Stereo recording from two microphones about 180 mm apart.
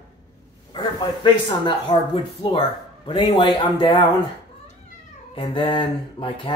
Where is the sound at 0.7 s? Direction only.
25° left (ahead or behind).